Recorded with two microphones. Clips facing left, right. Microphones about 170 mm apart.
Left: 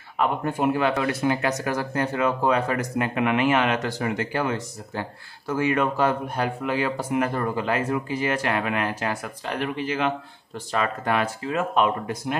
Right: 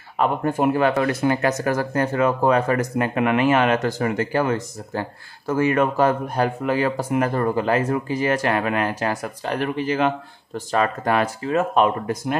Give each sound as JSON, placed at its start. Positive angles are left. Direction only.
{"t": 0.2, "sound": "speech", "side_deg": -45}